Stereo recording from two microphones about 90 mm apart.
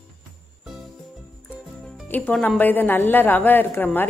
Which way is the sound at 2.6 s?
20° left (ahead or behind).